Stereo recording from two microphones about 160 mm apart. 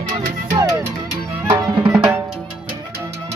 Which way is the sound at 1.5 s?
5° right (ahead or behind).